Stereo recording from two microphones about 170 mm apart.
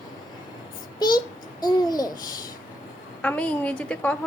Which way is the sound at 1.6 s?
25° left (ahead or behind).